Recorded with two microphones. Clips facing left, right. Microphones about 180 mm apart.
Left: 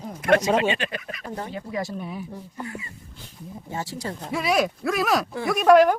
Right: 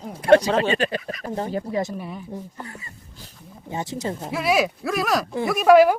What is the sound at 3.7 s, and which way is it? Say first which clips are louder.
Speech: right 4 dB; 20° right (ahead or behind).